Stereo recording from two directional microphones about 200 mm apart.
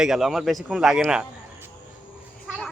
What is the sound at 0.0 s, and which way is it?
A man's voice, centre (ahead or behind).